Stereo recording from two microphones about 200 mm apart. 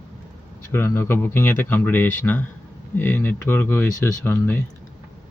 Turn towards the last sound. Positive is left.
turn(degrees=10)  # may be behind; listen again after turning